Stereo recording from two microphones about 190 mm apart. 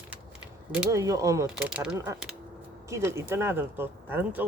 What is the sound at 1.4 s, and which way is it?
Speech, 5° right (ahead or behind).